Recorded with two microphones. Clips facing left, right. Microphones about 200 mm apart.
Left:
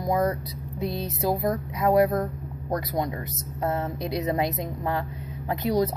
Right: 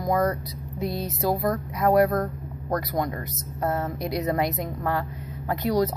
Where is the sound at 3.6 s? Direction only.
20° left (ahead or behind).